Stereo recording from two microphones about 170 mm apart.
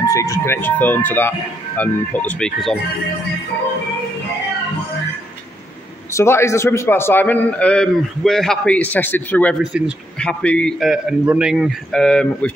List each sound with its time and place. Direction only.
0.0 s a man's voice: 20° left (ahead or behind)
6.1 s a man's voice: 15° left (ahead or behind)
9.6 s speech: 5° right (ahead or behind)
10.1 s a man's voice: 5° left (ahead or behind)